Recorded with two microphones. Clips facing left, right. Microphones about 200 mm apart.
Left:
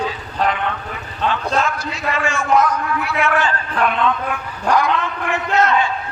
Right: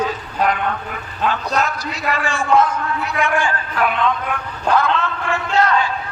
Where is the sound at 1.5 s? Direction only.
40° right (ahead or behind); by 4.1 s 5° right (ahead or behind).